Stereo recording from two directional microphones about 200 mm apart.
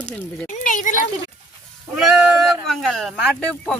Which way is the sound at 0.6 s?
40° left (ahead or behind).